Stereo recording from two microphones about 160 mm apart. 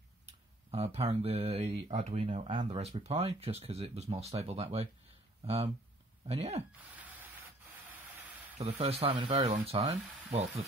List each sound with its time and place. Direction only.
0.7 s speech: 40° right (ahead or behind)
8.5 s speech: 40° right (ahead or behind)